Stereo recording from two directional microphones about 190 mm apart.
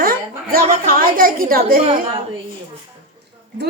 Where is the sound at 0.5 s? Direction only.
50° right (ahead or behind).